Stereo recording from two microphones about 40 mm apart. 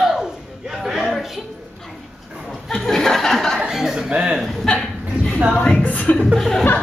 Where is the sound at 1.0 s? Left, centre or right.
Centre.